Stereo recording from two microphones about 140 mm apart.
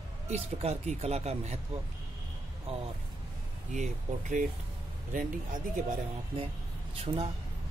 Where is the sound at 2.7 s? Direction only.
45° right (ahead or behind).